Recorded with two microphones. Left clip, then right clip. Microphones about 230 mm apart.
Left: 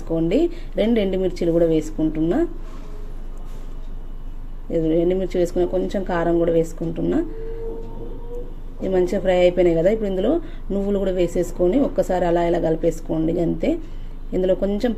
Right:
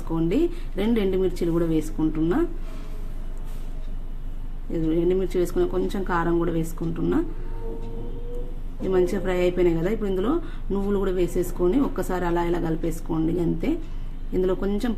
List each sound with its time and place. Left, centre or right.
0.2 s speech: centre
4.7 s speech: centre
8.8 s speech: centre